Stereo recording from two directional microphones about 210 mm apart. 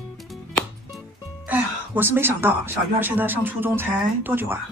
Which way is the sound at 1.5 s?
10° right (ahead or behind).